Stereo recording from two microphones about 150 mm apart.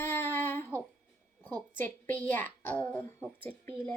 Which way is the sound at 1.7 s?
15° left (ahead or behind).